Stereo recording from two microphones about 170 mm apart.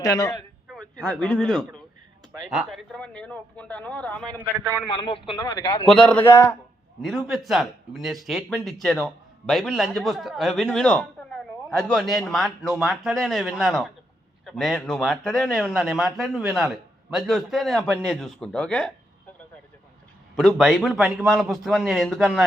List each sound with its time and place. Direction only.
0.0 s a man's voice: 20° left (ahead or behind)
0.7 s speech: 5° left (ahead or behind)
4.4 s a man's voice: 10° right (ahead or behind)
4.9 s speech: 35° left (ahead or behind)
5.9 s speech: 5° left (ahead or behind)
7.0 s speech: centre (ahead or behind)
20.3 s speech: centre (ahead or behind)